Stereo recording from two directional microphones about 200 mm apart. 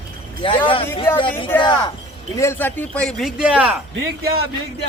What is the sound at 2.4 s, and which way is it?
Speech, 10° left (ahead or behind).